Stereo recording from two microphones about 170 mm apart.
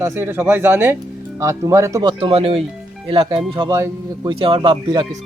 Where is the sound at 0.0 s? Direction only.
15° right (ahead or behind).